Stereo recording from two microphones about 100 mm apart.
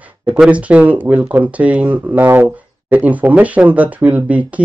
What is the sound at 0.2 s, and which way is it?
Speech, 10° right (ahead or behind).